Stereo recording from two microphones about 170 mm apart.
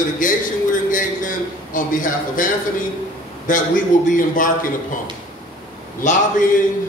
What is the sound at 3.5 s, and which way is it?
Speech, 50° left (ahead or behind).